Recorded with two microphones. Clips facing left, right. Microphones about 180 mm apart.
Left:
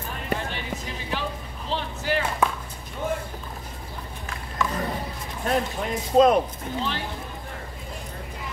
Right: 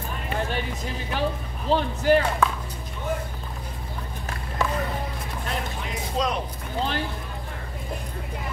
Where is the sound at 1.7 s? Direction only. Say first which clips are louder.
Right 8 dB; 45° right (ahead or behind).